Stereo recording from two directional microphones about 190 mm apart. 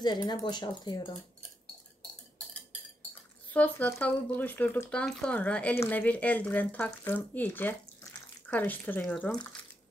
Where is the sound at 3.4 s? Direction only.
10° left (ahead or behind).